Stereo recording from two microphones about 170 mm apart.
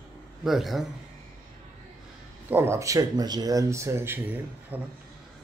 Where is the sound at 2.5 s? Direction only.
15° right (ahead or behind).